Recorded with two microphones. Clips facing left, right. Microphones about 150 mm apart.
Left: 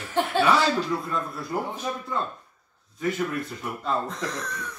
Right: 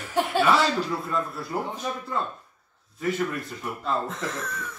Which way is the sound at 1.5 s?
Centre (ahead or behind).